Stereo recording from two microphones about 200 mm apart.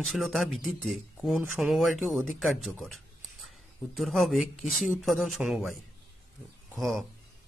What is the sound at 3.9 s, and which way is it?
Speech, centre (ahead or behind).